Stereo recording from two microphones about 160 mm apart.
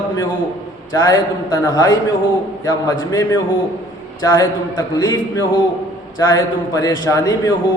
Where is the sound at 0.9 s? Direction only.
20° left (ahead or behind).